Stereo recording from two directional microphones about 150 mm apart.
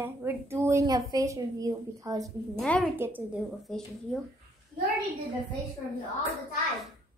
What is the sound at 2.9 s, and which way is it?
Speech, 15° right (ahead or behind).